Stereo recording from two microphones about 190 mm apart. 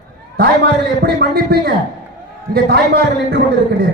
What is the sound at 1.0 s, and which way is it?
A man's voice, 55° right (ahead or behind).